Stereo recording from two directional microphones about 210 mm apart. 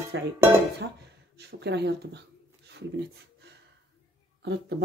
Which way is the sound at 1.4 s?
55° right (ahead or behind).